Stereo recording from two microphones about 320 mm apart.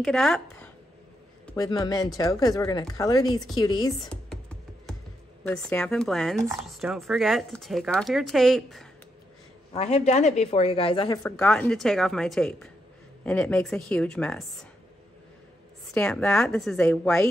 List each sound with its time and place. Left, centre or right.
0.0 s speech: centre
1.5 s speech: centre
4.1 s music: centre
5.5 s speech: centre
9.7 s speech: centre
11.3 s speech: centre
15.9 s speech: centre